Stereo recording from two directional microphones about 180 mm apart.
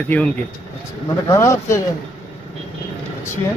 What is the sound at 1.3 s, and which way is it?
Speech, 15° left (ahead or behind).